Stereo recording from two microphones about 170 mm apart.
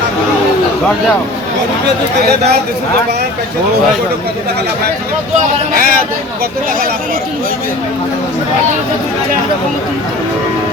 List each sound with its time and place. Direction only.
5.7 s speech: 60° right (ahead or behind)